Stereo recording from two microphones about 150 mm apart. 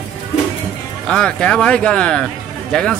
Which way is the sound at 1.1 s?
5° left (ahead or behind).